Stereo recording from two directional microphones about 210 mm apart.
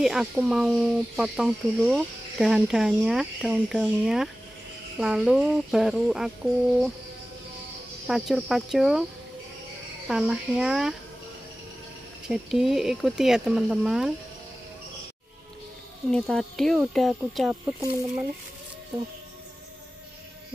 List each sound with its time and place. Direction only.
0.0 s speech: 5° right (ahead or behind)
8.1 s speech: centre (ahead or behind)
10.0 s speech: centre (ahead or behind)
12.3 s speech: centre (ahead or behind)
16.1 s speech: 5° left (ahead or behind)